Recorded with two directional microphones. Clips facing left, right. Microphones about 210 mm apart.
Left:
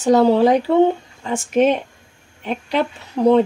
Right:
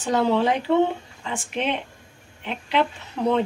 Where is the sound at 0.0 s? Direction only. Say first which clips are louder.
Left 8 dB; 40° left (ahead or behind).